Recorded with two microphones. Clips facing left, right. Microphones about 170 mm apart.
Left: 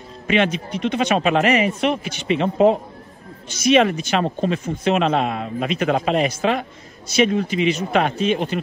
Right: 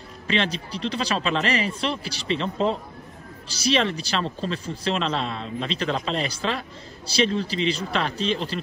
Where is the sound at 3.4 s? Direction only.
30° right (ahead or behind).